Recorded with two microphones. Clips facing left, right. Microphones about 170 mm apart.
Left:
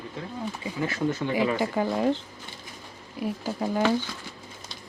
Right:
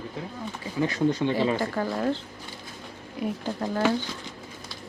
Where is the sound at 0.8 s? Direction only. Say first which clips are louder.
Right 3 dB; 20° right (ahead or behind).